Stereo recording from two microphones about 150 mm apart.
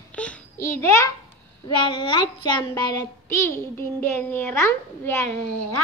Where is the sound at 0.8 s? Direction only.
20° left (ahead or behind).